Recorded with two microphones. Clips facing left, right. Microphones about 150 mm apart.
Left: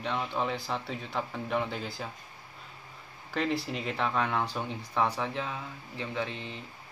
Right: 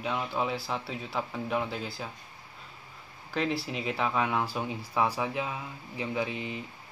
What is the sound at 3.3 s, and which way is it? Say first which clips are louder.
Speech: even; centre (ahead or behind).